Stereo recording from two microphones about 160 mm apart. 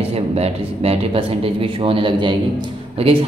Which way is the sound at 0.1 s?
40° right (ahead or behind).